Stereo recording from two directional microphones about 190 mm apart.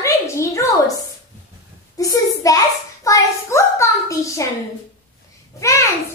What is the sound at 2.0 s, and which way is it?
Hands, 20° left (ahead or behind).